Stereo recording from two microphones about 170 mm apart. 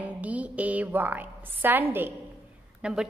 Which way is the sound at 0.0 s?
10° right (ahead or behind).